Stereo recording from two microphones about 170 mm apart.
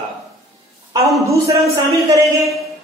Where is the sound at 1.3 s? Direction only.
20° right (ahead or behind).